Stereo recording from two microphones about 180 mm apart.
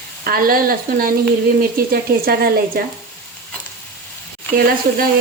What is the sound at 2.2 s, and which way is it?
Speech, 55° right (ahead or behind).